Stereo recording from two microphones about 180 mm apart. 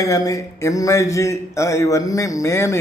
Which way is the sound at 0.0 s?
20° left (ahead or behind).